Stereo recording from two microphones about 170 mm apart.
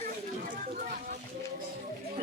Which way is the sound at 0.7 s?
55° right (ahead or behind).